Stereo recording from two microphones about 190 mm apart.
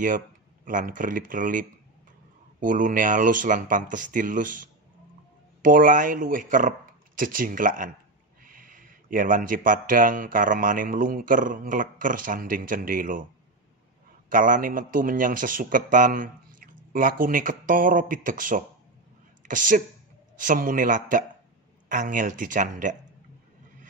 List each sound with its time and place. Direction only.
0.7 s speech: 45° right (ahead or behind)
14.3 s a woman's voice: 45° right (ahead or behind)